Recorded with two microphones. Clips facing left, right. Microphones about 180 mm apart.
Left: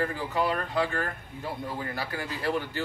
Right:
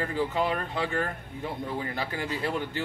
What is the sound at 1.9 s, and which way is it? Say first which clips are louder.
Speech: right 2 dB; 20° right (ahead or behind).